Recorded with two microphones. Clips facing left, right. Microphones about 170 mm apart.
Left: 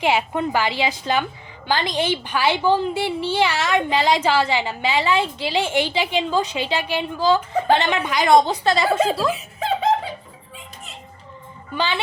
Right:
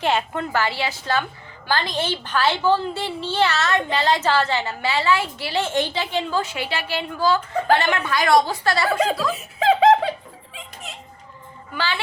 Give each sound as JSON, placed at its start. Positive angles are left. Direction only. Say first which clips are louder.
{"t": 0.0, "sound": "a woman's voice", "louder": "left 2 dB", "side_deg": 10}
{"t": 9.0, "sound": "speech", "louder": "left 2 dB", "side_deg": 30}
{"t": 9.6, "sound": "music", "louder": "right 7 dB", "side_deg": -90}
{"t": 11.7, "sound": "speech", "louder": "left 3 dB", "side_deg": 20}